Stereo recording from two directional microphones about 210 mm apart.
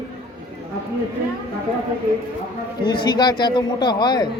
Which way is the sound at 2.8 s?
20° left (ahead or behind).